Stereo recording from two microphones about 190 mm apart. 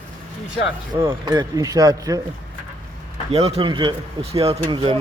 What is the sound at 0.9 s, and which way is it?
Speech, 25° right (ahead or behind).